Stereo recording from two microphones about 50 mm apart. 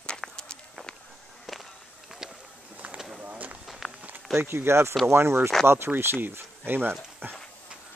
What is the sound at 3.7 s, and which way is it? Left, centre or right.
Walk, centre.